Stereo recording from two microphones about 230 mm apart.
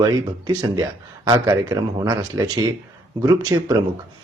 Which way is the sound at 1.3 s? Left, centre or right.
Centre.